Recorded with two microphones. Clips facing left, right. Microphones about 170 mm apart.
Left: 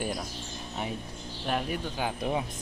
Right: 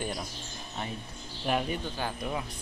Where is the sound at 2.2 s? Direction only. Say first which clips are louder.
Left 4 dB; 30° left (ahead or behind).